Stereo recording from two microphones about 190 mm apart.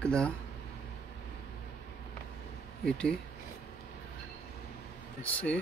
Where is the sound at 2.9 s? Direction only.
5° left (ahead or behind).